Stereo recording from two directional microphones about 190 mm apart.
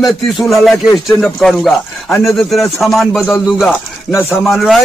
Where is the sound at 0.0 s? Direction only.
Centre (ahead or behind).